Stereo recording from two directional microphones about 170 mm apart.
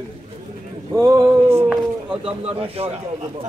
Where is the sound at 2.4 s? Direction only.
35° right (ahead or behind).